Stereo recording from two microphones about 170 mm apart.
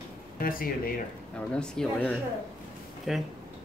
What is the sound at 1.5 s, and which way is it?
Speech, 5° left (ahead or behind).